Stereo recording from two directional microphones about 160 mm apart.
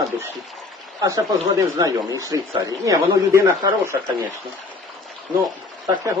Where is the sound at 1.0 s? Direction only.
20° right (ahead or behind).